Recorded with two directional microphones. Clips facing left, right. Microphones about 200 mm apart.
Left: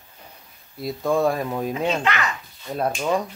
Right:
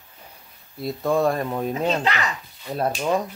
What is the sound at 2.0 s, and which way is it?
Speech, 35° right (ahead or behind).